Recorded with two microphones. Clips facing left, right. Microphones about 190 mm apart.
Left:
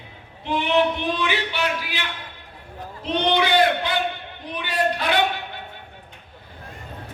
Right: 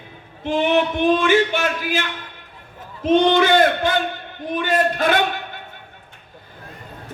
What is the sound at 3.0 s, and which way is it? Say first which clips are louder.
A man's voice: right 7 dB; 45° right (ahead or behind).